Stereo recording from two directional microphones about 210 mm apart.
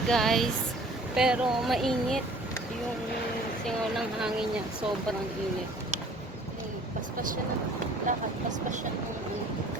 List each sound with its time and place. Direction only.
0.1 s speech: centre (ahead or behind)
3.9 s speech: centre (ahead or behind)
8.0 s speech: 35° right (ahead or behind)